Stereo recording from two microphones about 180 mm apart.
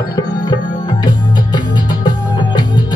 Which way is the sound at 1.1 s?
20° left (ahead or behind).